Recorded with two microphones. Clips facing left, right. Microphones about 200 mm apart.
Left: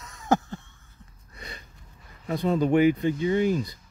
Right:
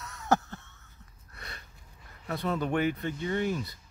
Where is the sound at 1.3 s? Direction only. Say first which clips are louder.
Left 4 dB; 15° left (ahead or behind).